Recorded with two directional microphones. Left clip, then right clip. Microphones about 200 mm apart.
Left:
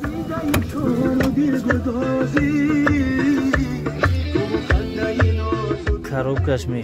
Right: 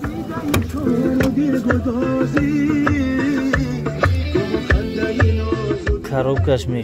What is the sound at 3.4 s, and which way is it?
Music, 35° right (ahead or behind).